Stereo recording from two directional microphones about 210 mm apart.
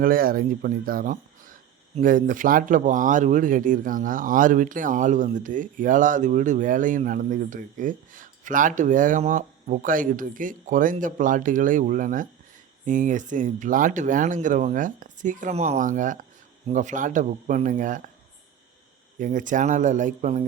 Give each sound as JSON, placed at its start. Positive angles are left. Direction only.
{"t": 0.0, "sound": "speech", "side_deg": -45}
{"t": 19.2, "sound": "speech", "side_deg": -40}